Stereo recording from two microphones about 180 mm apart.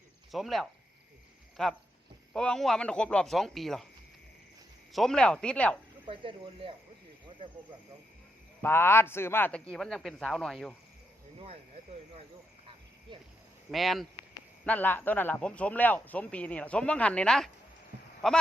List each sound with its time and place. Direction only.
0.3 s speech: centre (ahead or behind)
4.9 s speech: centre (ahead or behind)
6.1 s speech: 30° right (ahead or behind)
8.6 s a man's voice: 10° left (ahead or behind)
11.3 s speech: 35° right (ahead or behind)
13.7 s a man's voice: centre (ahead or behind)